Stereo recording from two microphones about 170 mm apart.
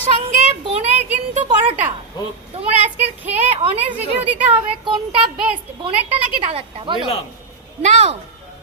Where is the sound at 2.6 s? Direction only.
40° right (ahead or behind).